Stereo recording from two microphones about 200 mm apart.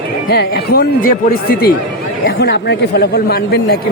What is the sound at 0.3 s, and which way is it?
Speech, 50° left (ahead or behind).